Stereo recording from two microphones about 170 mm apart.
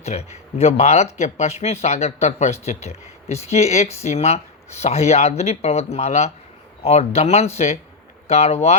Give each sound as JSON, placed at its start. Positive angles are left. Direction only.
{"t": 0.0, "sound": "speech", "side_deg": 40}